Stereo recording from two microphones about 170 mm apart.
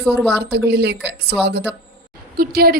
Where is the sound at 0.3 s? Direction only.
85° right.